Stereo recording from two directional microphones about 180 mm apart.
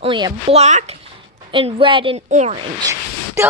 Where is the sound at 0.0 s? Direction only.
30° right (ahead or behind).